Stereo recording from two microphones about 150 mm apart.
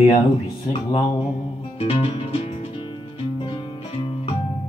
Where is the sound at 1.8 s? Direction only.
40° left (ahead or behind).